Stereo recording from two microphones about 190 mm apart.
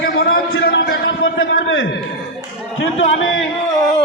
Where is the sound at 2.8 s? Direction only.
90° left.